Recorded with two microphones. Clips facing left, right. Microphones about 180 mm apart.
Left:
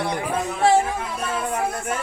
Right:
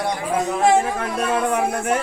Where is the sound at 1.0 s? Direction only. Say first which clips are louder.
Right 5 dB; 65° right (ahead or behind).